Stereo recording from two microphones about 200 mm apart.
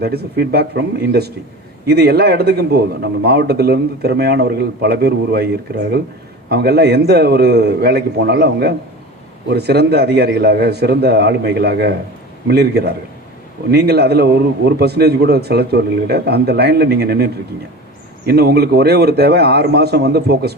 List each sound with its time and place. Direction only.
0.0 s a man's voice: 50° right (ahead or behind)
18.3 s a man's voice: 50° right (ahead or behind)